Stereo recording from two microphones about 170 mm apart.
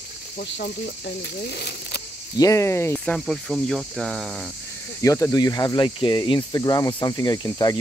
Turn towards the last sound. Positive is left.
turn(degrees=25)  # may be behind; listen again after turning